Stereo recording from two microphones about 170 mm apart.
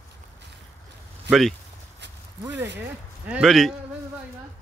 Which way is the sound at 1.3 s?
90° right.